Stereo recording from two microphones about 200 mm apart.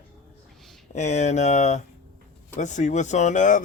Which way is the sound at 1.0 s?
35° left (ahead or behind).